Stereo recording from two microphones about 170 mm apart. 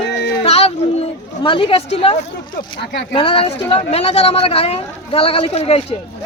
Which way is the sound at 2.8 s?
90° left.